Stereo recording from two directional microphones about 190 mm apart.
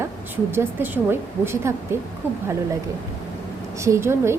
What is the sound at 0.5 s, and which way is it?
A woman's voice, 10° right (ahead or behind).